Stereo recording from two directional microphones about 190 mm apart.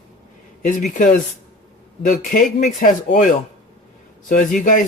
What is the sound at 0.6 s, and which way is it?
Speech, 45° left (ahead or behind).